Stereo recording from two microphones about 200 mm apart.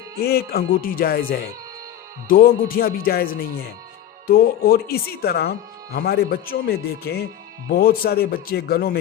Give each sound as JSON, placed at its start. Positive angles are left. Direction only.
{"t": 0.2, "sound": "speech", "side_deg": 50}